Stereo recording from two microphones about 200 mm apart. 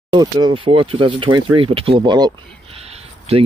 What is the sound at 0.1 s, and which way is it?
Speech, 20° right (ahead or behind).